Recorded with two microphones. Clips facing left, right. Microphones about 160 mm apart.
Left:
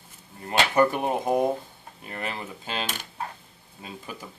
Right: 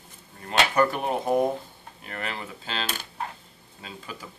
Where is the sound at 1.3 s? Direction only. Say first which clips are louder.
Right 1 dB; centre (ahead or behind).